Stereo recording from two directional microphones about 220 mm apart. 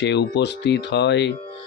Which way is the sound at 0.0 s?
50° left (ahead or behind).